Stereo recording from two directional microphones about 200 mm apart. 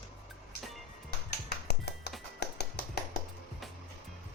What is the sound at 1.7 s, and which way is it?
Music, 55° left (ahead or behind).